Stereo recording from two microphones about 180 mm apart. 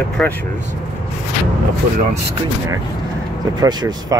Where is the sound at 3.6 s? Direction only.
25° right (ahead or behind).